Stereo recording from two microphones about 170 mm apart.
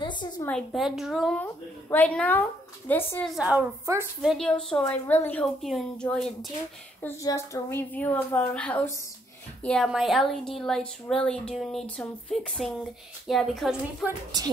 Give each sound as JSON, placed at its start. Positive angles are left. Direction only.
{"t": 0.0, "sound": "a sound", "side_deg": 25}
{"t": 0.5, "sound": "a woman's voice", "side_deg": 0}
{"t": 3.3, "sound": "speech", "side_deg": -5}
{"t": 3.8, "sound": "a woman's voice", "side_deg": -15}
{"t": 4.2, "sound": "speech", "side_deg": 0}
{"t": 7.2, "sound": "a woman's voice", "side_deg": 15}